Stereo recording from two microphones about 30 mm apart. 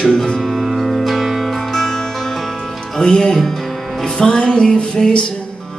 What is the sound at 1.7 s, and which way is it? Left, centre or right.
Music, centre.